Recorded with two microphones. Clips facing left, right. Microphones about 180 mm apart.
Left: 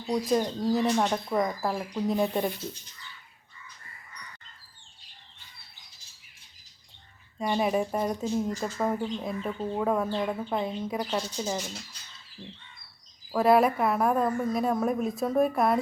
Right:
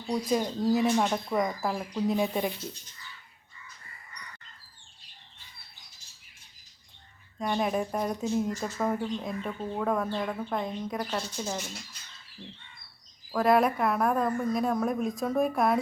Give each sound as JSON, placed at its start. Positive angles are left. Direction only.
{"t": 0.3, "sound": "a woman's voice", "side_deg": -5}
{"t": 7.3, "sound": "a woman's voice", "side_deg": 5}